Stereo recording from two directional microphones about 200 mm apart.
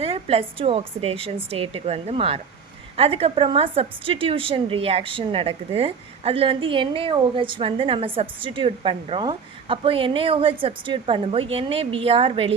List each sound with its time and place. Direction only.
0.0 s a woman's voice: 30° right (ahead or behind)